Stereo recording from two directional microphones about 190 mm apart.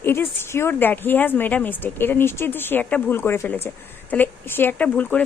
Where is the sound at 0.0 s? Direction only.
10° left (ahead or behind).